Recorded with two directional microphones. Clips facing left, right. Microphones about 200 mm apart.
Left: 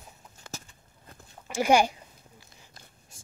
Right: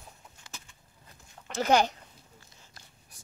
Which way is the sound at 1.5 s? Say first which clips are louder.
Left 2 dB; 10° left (ahead or behind).